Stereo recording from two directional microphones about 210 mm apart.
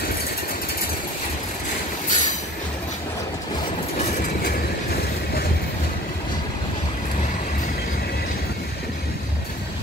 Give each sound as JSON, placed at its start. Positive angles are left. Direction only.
{"t": 2.0, "sound": "train", "side_deg": 35}